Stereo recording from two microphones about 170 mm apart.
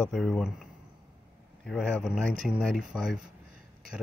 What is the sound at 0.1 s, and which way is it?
Speech, centre (ahead or behind).